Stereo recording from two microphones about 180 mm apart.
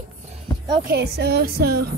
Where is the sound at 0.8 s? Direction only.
65° right (ahead or behind).